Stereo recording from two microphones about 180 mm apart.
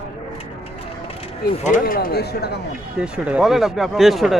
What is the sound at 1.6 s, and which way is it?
Speech, 50° left (ahead or behind).